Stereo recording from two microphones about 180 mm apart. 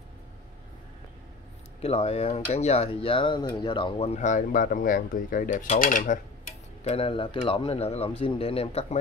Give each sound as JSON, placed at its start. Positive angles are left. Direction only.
{"t": 1.8, "sound": "speech", "side_deg": 35}
{"t": 6.8, "sound": "speech", "side_deg": 35}